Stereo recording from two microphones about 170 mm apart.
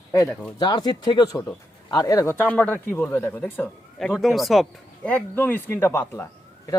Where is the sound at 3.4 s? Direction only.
5° left (ahead or behind).